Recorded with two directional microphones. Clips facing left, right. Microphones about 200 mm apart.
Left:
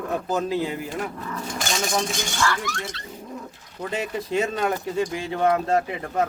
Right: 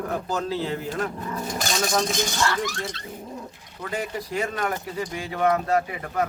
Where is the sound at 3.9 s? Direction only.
25° left (ahead or behind).